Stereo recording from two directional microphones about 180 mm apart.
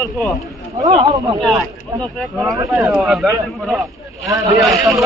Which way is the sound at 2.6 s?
15° right (ahead or behind).